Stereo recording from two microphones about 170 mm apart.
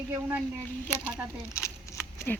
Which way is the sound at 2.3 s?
10° left (ahead or behind).